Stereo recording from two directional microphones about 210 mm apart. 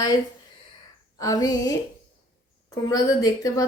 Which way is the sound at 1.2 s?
15° left (ahead or behind).